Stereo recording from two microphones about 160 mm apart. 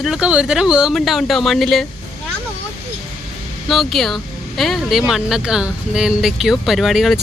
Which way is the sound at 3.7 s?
Centre (ahead or behind).